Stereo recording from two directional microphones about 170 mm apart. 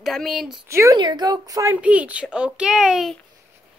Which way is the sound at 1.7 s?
10° right (ahead or behind).